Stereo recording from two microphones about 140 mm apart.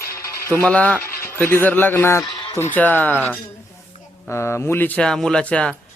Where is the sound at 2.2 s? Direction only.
35° left (ahead or behind).